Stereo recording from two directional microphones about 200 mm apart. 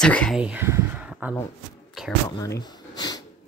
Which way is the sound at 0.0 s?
5° left (ahead or behind).